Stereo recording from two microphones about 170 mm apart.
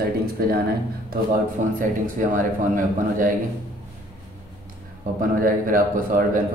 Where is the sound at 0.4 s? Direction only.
65° right (ahead or behind).